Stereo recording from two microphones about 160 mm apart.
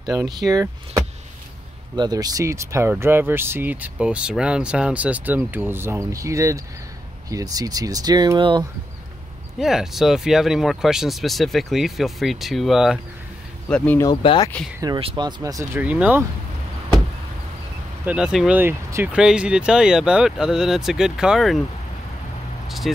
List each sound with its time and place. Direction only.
0.0 s speech: 25° right (ahead or behind)
9.6 s speech: centre (ahead or behind)
13.7 s speech: 10° left (ahead or behind)
14.0 s speech: 25° left (ahead or behind)
15.0 s speech: 30° right (ahead or behind); by 16.3 s 10° right (ahead or behind)
18.0 s speech: 5° right (ahead or behind)
22.7 s speech: centre (ahead or behind)